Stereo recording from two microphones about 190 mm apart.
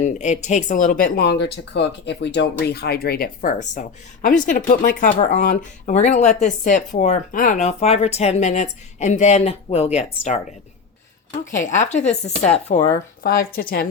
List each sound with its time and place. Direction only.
0.0 s speech: 40° left (ahead or behind)
11.5 s speech: 40° left (ahead or behind)
13.2 s speech: 55° left (ahead or behind)